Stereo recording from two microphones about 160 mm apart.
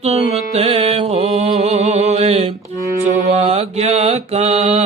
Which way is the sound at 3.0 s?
50° right (ahead or behind).